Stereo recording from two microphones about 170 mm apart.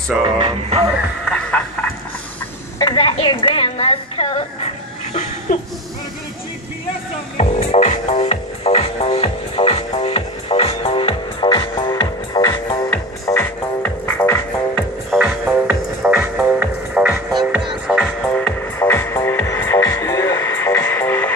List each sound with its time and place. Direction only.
0.4 s music: 35° right (ahead or behind)
1.2 s music: 5° left (ahead or behind)
2.8 s a sound: 30° left (ahead or behind)
7.3 s music: 40° left (ahead or behind); by 12.8 s 25° left (ahead or behind)
12.9 s music: 15° left (ahead or behind)
15.0 s music: 5° right (ahead or behind)
18.2 s music: 10° left (ahead or behind)